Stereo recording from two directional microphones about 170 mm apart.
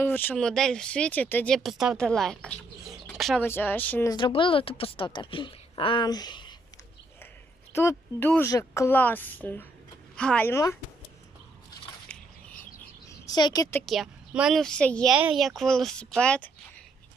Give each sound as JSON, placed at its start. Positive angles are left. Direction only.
{"t": 0.0, "sound": "speech", "side_deg": 10}
{"t": 3.4, "sound": "a woman's voice", "side_deg": 15}
{"t": 4.1, "sound": "a woman's voice", "side_deg": 30}
{"t": 7.7, "sound": "a woman's voice", "side_deg": 15}
{"t": 12.0, "sound": "a sound", "side_deg": 10}
{"t": 13.1, "sound": "speech", "side_deg": 20}
{"t": 13.8, "sound": "speech", "side_deg": 0}
{"t": 15.1, "sound": "speech", "side_deg": -5}